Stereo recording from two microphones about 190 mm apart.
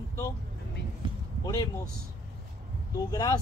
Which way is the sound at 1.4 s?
20° left (ahead or behind).